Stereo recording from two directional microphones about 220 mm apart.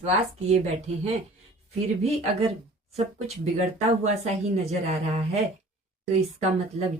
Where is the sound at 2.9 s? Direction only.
30° right (ahead or behind).